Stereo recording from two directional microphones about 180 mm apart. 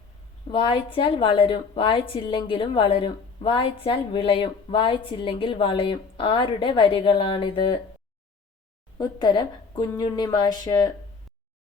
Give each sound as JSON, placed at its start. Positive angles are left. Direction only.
{"t": 0.5, "sound": "a woman's voice", "side_deg": 30}
{"t": 9.0, "sound": "a woman's voice", "side_deg": 25}